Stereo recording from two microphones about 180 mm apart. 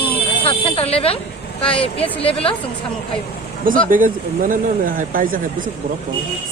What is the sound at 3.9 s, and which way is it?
Speech, 50° right (ahead or behind).